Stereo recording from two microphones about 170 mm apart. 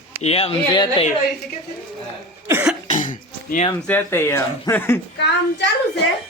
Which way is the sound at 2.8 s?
50° left (ahead or behind).